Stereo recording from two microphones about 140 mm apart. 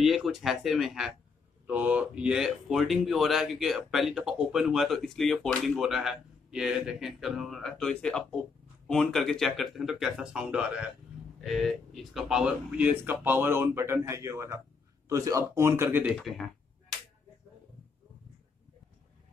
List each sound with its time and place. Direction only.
0.0 s speech: centre (ahead or behind)
16.1 s speech: centre (ahead or behind)